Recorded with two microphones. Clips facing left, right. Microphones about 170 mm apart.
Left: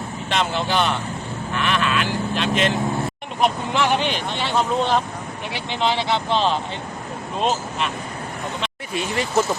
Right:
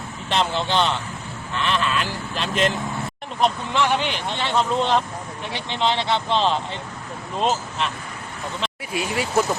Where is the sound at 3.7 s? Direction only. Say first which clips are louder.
Left 1 dB; 15° left (ahead or behind).